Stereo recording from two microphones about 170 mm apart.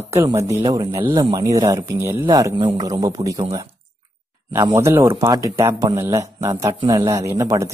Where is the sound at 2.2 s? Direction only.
25° right (ahead or behind).